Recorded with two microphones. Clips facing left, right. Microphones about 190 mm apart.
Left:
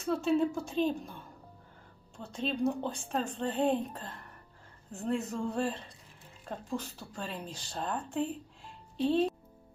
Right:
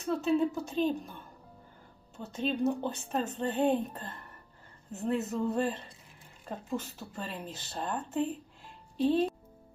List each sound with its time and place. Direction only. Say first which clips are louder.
0.0 s speech: even; centre (ahead or behind)